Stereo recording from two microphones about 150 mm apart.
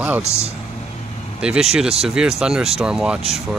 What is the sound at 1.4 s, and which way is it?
Speech, 5° right (ahead or behind).